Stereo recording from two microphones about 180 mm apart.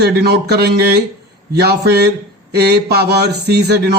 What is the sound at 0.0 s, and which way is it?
Speech, 65° right (ahead or behind).